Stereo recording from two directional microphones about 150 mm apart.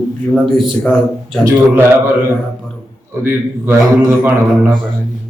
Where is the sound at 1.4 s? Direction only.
20° right (ahead or behind).